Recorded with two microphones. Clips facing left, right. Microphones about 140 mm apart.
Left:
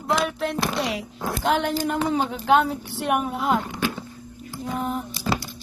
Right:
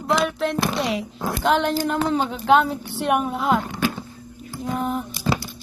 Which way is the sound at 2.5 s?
60° right (ahead or behind).